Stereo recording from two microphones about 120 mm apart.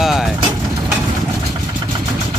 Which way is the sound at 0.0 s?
Centre (ahead or behind).